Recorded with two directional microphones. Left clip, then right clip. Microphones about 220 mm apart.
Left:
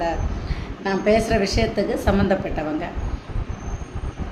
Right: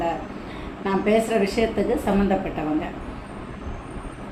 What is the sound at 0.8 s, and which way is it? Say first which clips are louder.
A woman's voice: left 2 dB; 15° left (ahead or behind).